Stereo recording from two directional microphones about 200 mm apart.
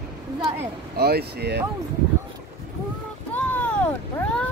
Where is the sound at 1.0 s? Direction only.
50° right (ahead or behind).